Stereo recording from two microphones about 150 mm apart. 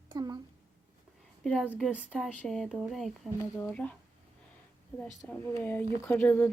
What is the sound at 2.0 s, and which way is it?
Speech, 5° left (ahead or behind).